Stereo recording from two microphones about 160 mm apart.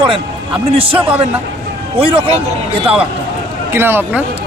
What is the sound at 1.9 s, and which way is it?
Speech, 35° right (ahead or behind).